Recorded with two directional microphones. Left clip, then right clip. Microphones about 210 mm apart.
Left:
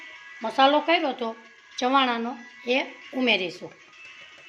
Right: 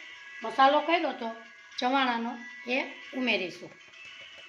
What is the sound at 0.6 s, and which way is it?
Speech, 45° left (ahead or behind).